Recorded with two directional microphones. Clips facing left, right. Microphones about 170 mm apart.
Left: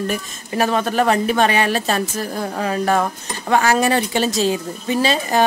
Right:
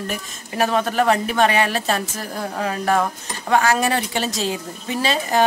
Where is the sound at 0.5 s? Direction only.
30° left (ahead or behind).